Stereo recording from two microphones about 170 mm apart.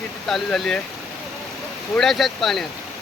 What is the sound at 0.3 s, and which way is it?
Speech, centre (ahead or behind).